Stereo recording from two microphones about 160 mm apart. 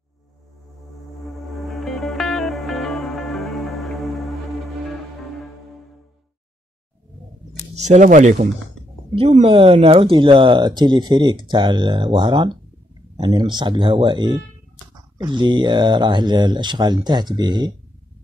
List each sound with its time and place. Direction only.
1.2 s music: centre (ahead or behind)
7.7 s speech: 45° right (ahead or behind)
9.1 s speech: 35° right (ahead or behind)